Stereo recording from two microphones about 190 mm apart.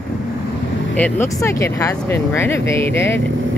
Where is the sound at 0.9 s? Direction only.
10° left (ahead or behind).